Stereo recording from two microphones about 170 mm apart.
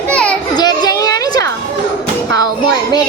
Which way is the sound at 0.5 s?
25° left (ahead or behind).